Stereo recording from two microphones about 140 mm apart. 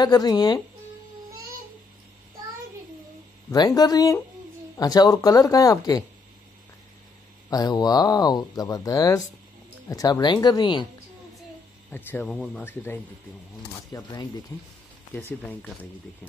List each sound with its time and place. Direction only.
0.0 s speech: 30° left (ahead or behind)
3.5 s speech: 30° left (ahead or behind)
7.4 s speech: 25° left (ahead or behind)
11.9 s speech: 15° left (ahead or behind)
12.3 s speech: 5° left (ahead or behind)
12.6 s speech: 15° left (ahead or behind)
13.9 s speech: 30° left (ahead or behind)
15.1 s speech: 15° left (ahead or behind)